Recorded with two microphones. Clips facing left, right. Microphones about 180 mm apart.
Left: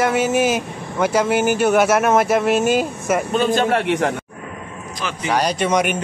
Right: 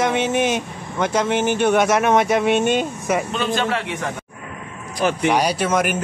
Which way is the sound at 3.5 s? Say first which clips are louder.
Left 3 dB; 45° left (ahead or behind).